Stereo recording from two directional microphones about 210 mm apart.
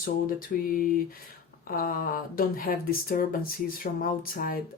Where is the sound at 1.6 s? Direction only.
40° left (ahead or behind).